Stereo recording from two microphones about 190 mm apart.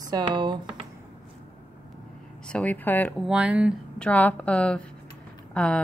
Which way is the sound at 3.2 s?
5° right (ahead or behind).